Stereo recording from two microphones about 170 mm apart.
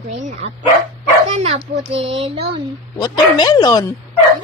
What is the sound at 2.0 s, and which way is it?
Speech, 35° right (ahead or behind).